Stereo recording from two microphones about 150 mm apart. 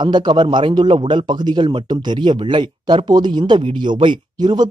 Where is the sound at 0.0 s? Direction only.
30° right (ahead or behind).